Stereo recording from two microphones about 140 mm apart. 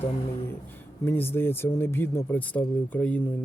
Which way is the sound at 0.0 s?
50° left (ahead or behind).